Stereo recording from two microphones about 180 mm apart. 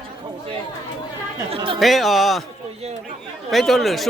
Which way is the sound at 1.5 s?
30° right (ahead or behind).